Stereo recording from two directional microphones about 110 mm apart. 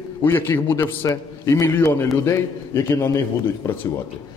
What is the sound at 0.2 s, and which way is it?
A man's voice, 20° left (ahead or behind).